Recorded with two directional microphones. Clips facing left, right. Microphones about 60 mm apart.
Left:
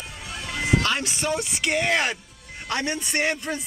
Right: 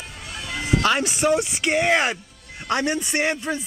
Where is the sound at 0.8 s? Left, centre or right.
Right.